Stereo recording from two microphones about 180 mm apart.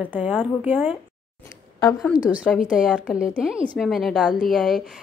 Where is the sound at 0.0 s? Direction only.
10° right (ahead or behind).